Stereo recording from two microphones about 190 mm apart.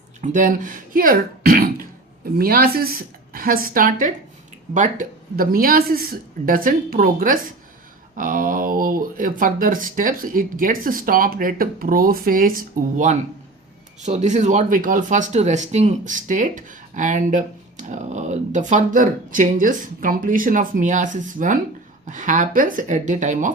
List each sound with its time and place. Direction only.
0.2 s speech: 40° right (ahead or behind)